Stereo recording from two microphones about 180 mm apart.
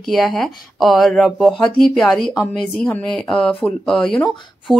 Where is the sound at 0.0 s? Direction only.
Centre (ahead or behind).